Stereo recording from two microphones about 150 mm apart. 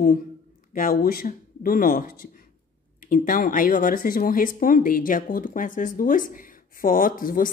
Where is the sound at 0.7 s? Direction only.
75° left (ahead or behind).